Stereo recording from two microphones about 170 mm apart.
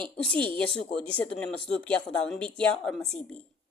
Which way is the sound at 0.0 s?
5° left (ahead or behind).